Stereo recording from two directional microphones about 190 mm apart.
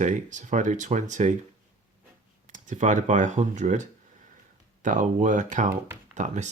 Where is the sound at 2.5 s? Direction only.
40° right (ahead or behind).